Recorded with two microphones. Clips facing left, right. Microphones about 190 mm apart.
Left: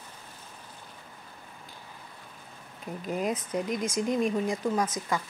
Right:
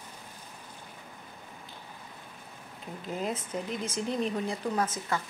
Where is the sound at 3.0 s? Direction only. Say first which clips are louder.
Left 3 dB; 15° left (ahead or behind).